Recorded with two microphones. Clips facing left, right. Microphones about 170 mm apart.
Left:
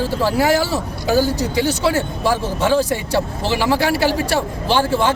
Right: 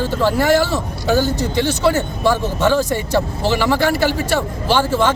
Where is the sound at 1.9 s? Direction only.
5° left (ahead or behind).